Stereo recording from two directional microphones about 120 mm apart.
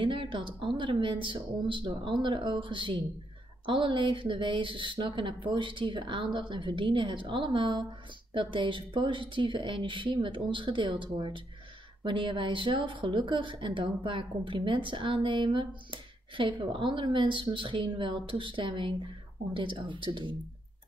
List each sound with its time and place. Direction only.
0.0 s speech: 45° right (ahead or behind)